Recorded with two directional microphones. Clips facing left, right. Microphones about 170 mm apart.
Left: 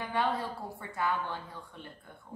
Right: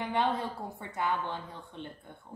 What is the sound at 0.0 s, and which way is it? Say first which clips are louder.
A woman's voice: right 1 dB; 20° right (ahead or behind).